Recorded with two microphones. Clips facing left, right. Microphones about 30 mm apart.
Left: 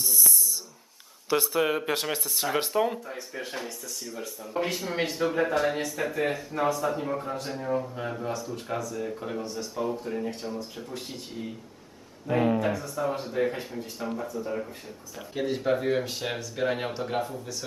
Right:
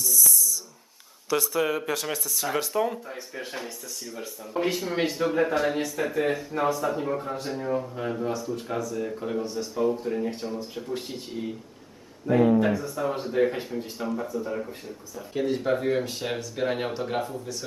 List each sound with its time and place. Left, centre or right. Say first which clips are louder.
0.0 s a sound: right 2 dB; left
1.3 s speech: even; left
2.1 s speech: even; left
2.7 s speech: even; centre
3.1 s a man's voice: even; centre
12.3 s speech: right 4 dB; centre
12.5 s a man's voice: right 4 dB; centre
14.3 s speech: right 2 dB; centre